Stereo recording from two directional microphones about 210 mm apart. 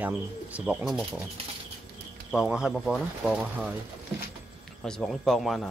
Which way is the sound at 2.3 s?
5° right (ahead or behind).